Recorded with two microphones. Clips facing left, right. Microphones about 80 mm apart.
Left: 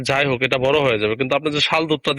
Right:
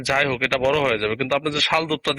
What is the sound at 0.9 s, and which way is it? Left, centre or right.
Speech, right.